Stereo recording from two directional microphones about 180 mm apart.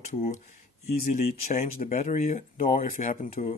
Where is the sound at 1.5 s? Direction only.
45° left (ahead or behind).